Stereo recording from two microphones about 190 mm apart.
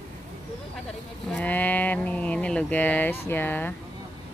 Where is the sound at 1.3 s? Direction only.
10° left (ahead or behind).